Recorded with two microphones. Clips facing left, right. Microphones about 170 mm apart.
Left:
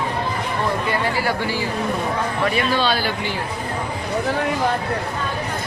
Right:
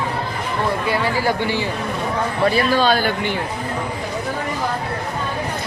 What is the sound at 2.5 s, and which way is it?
Speech, 45° right (ahead or behind).